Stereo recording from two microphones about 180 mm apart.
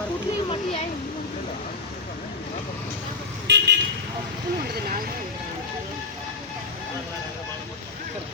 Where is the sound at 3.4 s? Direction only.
75° right (ahead or behind).